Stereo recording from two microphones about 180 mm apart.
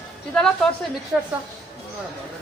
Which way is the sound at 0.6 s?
Centre (ahead or behind).